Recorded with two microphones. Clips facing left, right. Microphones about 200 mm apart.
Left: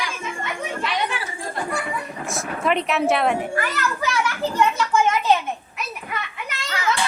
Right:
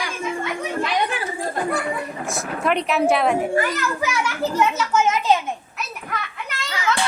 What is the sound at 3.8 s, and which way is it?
A child's voice, 10° right (ahead or behind).